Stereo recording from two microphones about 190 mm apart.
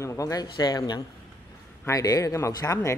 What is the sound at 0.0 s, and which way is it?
A man's voice, 15° left (ahead or behind).